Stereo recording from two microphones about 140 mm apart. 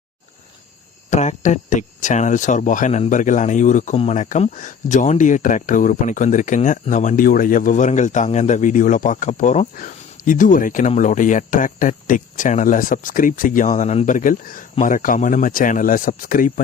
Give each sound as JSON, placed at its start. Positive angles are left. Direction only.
{"t": 1.1, "sound": "speech", "side_deg": 60}